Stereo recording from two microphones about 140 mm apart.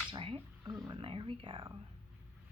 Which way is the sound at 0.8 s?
35° right (ahead or behind).